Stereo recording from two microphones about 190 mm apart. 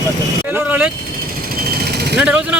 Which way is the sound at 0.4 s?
10° right (ahead or behind).